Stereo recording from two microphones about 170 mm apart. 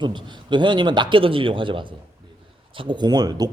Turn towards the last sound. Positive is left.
turn(degrees=-25)  # may be behind; listen again after turning